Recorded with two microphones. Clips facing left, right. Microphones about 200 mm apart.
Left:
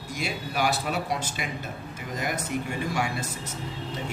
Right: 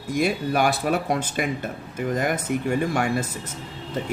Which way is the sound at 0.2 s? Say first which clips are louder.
Right 7 dB; 50° right (ahead or behind).